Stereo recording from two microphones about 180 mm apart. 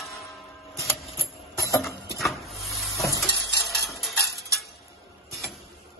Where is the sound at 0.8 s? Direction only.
15° left (ahead or behind).